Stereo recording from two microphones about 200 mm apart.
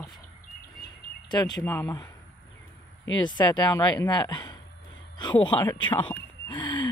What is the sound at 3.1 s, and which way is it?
Speech, 20° left (ahead or behind).